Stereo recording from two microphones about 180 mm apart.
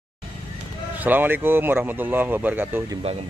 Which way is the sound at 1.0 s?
10° right (ahead or behind).